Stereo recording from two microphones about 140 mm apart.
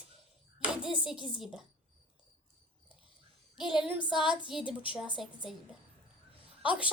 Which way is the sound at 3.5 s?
5° right (ahead or behind).